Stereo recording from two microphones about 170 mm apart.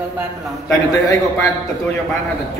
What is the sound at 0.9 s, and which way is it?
Speech, 20° left (ahead or behind).